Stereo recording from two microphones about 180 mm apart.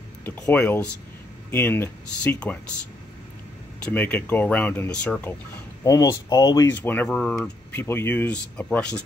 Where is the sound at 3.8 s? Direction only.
10° left (ahead or behind).